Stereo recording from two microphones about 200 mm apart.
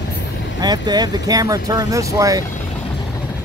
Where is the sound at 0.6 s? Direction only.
20° right (ahead or behind).